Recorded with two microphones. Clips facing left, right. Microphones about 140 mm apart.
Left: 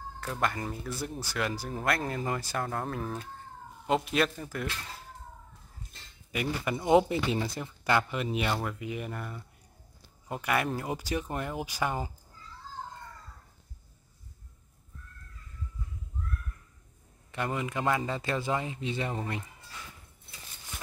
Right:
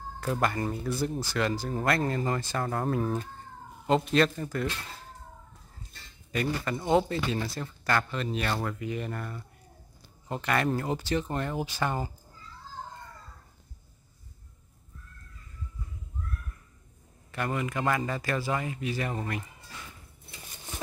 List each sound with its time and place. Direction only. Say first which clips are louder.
0.2 s speech: right 4 dB; 5° right (ahead or behind)
6.3 s speech: right 2 dB; 10° left (ahead or behind)
17.3 s speech: right 1 dB; 20° left (ahead or behind)